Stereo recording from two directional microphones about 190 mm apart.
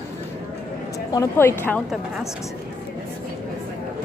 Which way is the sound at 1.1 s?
15° left (ahead or behind).